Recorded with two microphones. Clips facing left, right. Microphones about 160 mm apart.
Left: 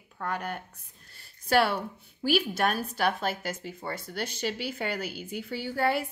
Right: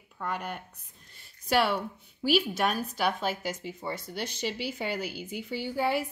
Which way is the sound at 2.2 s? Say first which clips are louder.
Even; 45° left (ahead or behind).